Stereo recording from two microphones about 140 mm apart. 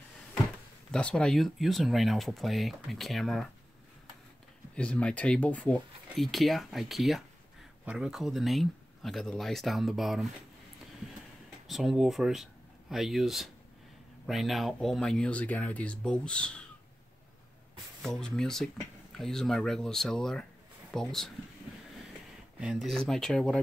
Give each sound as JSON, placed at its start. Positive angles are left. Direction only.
{"t": 0.9, "sound": "speech", "side_deg": 5}
{"t": 4.7, "sound": "speech", "side_deg": 10}
{"t": 11.6, "sound": "speech", "side_deg": 0}
{"t": 18.0, "sound": "speech", "side_deg": 0}
{"t": 22.6, "sound": "speech", "side_deg": -5}